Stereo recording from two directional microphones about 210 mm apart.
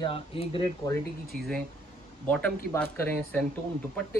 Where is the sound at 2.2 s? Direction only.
5° left (ahead or behind).